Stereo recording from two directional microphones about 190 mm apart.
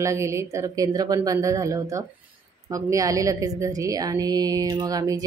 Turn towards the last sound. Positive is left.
turn(degrees=-20)  # may be behind; listen again after turning